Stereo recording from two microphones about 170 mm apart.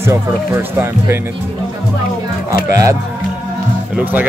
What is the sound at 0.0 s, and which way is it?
Speech, 15° right (ahead or behind).